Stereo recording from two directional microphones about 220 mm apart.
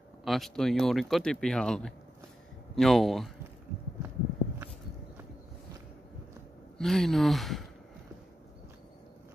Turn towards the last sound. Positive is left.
turn(degrees=0)  # may be behind; listen again after turning